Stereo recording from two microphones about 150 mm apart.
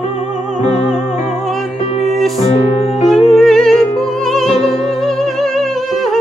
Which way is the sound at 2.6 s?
40° left (ahead or behind).